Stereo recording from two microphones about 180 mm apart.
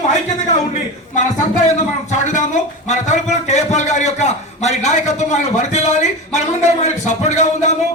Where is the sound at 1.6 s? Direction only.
40° left (ahead or behind).